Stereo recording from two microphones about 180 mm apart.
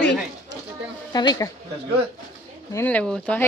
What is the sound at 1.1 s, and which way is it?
Speech, 20° left (ahead or behind).